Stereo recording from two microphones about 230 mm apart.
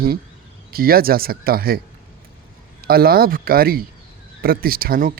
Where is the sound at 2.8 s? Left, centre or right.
Right.